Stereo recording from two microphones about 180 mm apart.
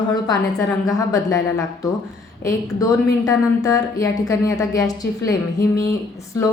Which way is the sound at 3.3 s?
20° left (ahead or behind).